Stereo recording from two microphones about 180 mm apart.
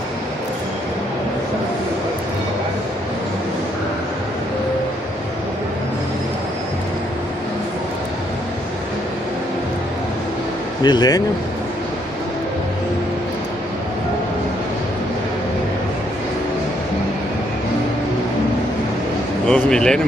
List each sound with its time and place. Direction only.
10.8 s speech: 25° left (ahead or behind)
19.4 s a man's voice: 5° left (ahead or behind)